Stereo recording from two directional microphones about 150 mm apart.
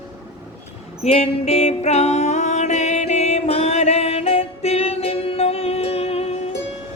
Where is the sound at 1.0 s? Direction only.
45° left (ahead or behind).